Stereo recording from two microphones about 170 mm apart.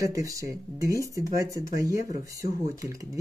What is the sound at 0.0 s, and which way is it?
Speech, 20° right (ahead or behind).